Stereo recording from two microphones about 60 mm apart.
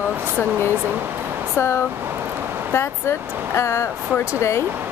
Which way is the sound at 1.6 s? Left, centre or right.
Left.